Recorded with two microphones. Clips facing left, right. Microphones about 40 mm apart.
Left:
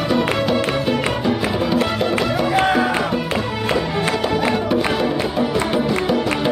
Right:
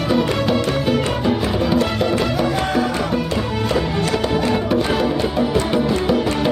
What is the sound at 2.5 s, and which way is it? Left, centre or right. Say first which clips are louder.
Music: left 3 dB; left.